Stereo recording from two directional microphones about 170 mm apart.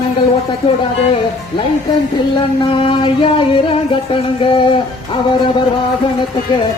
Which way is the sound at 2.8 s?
30° left (ahead or behind).